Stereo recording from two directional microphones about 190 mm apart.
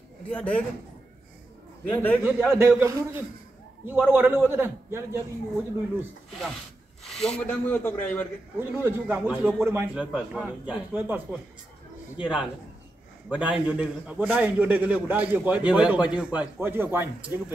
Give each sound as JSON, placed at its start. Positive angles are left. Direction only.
{"t": 0.3, "sound": "speech", "side_deg": 10}
{"t": 1.9, "sound": "speech", "side_deg": 10}
{"t": 2.2, "sound": "a man's voice", "side_deg": -10}
{"t": 7.1, "sound": "speech", "side_deg": 0}
{"t": 8.5, "sound": "a man's voice", "side_deg": -10}